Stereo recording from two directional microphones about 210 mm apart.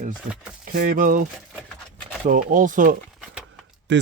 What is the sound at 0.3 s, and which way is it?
Speech, 35° right (ahead or behind).